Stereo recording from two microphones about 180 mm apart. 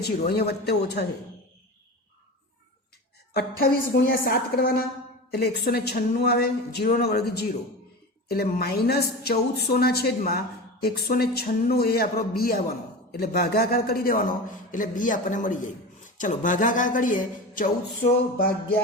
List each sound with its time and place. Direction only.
0.0 s a woman's voice: 65° left (ahead or behind)
3.3 s a woman's voice: 55° left (ahead or behind)
8.3 s a woman's voice: 60° left (ahead or behind)